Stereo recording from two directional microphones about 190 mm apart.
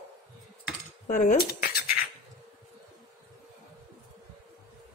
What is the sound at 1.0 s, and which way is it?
Cutlery, 40° left (ahead or behind).